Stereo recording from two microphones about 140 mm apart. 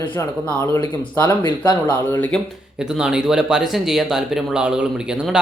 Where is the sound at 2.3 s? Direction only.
5° left (ahead or behind).